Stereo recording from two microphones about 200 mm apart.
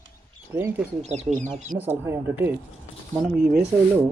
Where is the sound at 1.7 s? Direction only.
10° right (ahead or behind).